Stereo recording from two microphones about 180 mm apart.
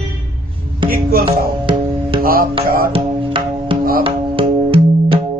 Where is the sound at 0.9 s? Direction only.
55° right (ahead or behind).